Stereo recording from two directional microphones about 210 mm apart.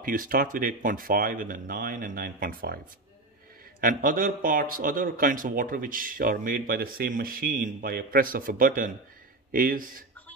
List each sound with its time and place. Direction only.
0.0 s speech: 40° right (ahead or behind)
3.8 s speech: 40° right (ahead or behind)